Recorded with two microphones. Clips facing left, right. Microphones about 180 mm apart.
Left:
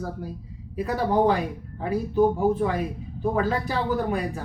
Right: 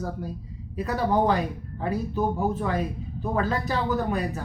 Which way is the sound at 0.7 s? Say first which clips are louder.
Left 1 dB; 10° left (ahead or behind).